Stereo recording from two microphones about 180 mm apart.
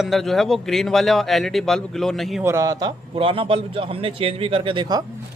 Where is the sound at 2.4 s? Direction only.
15° right (ahead or behind).